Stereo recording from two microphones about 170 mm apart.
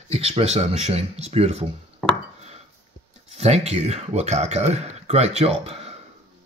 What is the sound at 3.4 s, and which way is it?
Speech, 40° right (ahead or behind).